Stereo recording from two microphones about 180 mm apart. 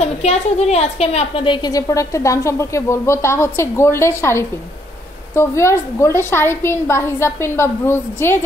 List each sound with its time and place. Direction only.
0.0 s a woman's voice: 35° left (ahead or behind); by 8.4 s 15° left (ahead or behind)